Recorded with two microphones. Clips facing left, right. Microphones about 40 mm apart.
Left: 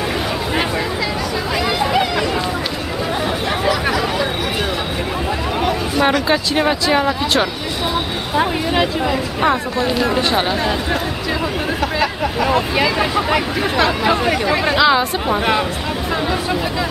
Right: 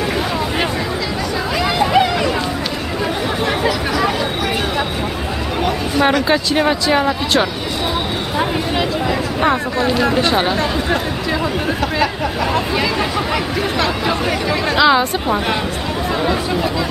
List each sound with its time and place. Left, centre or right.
1.8 s a sound: centre
5.6 s speech: centre
12.0 s speech: centre